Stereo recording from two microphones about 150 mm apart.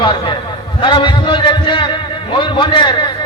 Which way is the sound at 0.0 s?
35° left (ahead or behind).